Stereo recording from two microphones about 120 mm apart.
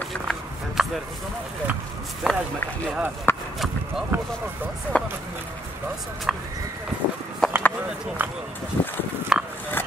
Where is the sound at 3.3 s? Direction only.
20° left (ahead or behind).